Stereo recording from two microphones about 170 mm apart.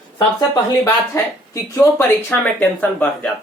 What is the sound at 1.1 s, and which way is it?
Speech, 20° left (ahead or behind).